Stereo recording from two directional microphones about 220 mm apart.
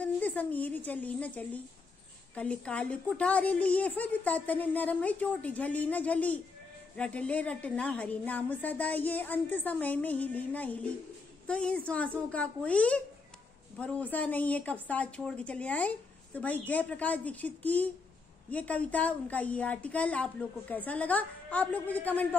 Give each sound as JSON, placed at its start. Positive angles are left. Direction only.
{"t": 0.0, "sound": "a woman's voice", "side_deg": 5}